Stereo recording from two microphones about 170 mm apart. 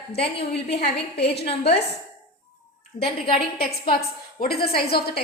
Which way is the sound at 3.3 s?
65° left (ahead or behind).